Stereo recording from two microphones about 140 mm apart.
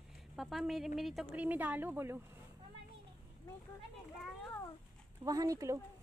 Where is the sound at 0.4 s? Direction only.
Centre (ahead or behind); by 2.2 s 15° right (ahead or behind).